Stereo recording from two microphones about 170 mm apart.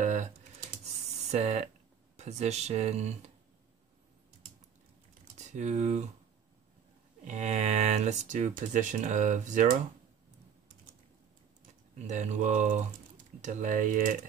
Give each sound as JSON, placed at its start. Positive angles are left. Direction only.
{"t": 0.0, "sound": "computer keyboard", "side_deg": -45}
{"t": 1.3, "sound": "speech", "side_deg": -40}
{"t": 5.4, "sound": "speech", "side_deg": -45}
{"t": 7.2, "sound": "speech", "side_deg": -40}
{"t": 11.9, "sound": "speech", "side_deg": -45}